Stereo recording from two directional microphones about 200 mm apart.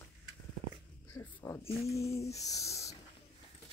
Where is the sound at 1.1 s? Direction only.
15° left (ahead or behind).